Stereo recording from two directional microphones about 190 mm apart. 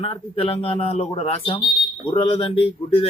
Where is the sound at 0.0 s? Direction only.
30° left (ahead or behind).